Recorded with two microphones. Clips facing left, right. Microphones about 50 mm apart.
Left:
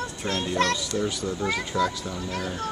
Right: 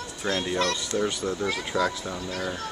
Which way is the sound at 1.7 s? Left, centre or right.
Centre.